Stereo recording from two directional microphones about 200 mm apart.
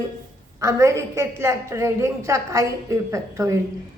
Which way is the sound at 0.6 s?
15° right (ahead or behind).